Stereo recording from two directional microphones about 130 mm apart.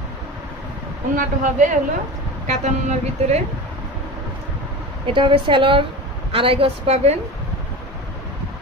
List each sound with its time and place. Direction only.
1.1 s speech: 90° right
2.4 s a woman's voice: 60° right (ahead or behind)
5.0 s a woman's voice: 40° right (ahead or behind)